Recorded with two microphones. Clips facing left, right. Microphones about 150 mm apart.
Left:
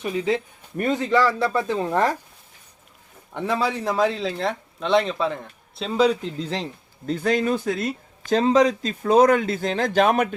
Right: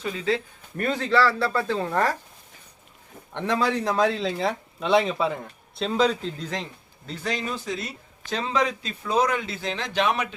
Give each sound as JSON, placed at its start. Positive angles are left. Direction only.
{"t": 0.0, "sound": "a man's voice", "side_deg": 20}
{"t": 3.3, "sound": "speech", "side_deg": 5}
{"t": 6.4, "sound": "speech", "side_deg": 30}
{"t": 7.1, "sound": "a man's voice", "side_deg": 50}